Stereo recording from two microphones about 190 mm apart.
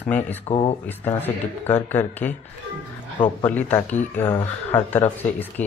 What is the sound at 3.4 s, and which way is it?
Speech, 10° left (ahead or behind).